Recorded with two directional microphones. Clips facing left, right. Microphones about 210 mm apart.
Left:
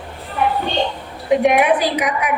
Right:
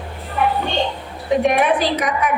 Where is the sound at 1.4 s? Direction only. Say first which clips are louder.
Left 1 dB; 15° left (ahead or behind).